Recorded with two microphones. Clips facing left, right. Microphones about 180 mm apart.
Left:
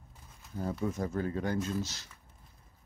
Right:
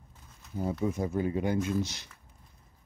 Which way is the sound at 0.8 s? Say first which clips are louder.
Right 3 dB; 10° right (ahead or behind).